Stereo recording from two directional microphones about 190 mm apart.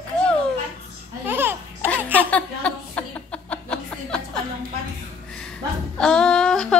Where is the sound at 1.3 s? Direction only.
10° right (ahead or behind).